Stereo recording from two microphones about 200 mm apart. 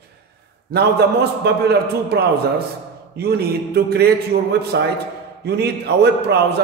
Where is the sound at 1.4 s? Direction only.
55° right (ahead or behind).